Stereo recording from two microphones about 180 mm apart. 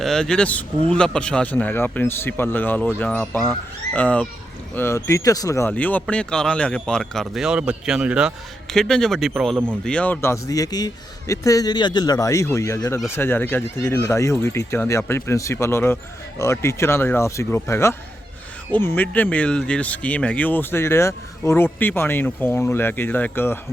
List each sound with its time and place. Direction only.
0.0 s speech: 5° left (ahead or behind)
9.8 s speech: 5° left (ahead or behind)